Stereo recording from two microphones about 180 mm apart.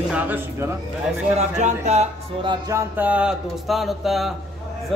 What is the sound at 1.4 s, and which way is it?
Speech, 40° right (ahead or behind).